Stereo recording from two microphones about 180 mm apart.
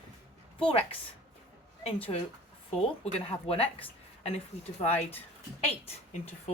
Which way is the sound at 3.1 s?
35° left (ahead or behind).